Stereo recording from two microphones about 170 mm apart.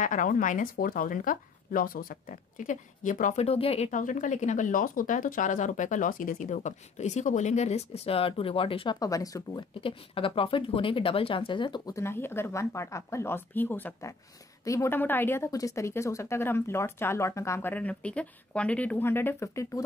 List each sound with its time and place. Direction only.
0.0 s a woman's voice: 50° left (ahead or behind); by 19.8 s 15° left (ahead or behind)